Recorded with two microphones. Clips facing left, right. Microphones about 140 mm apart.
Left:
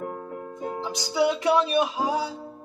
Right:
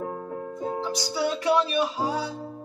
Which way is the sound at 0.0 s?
10° right (ahead or behind).